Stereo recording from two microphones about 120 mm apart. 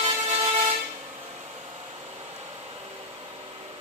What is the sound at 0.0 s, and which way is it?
Vehicle, 45° right (ahead or behind).